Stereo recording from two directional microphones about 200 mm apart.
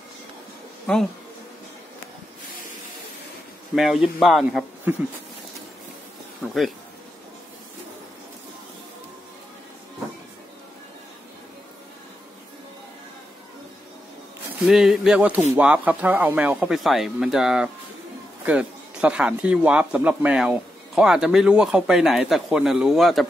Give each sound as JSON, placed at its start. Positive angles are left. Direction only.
{"t": 0.9, "sound": "a man's voice", "side_deg": 5}
{"t": 3.7, "sound": "a man's voice", "side_deg": 0}
{"t": 6.4, "sound": "a man's voice", "side_deg": 0}
{"t": 14.7, "sound": "a man's voice", "side_deg": -5}